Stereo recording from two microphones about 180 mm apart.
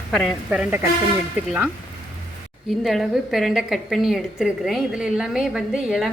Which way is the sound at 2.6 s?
Centre (ahead or behind).